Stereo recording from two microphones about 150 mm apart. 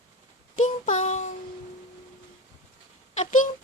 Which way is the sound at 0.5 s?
55° left (ahead or behind).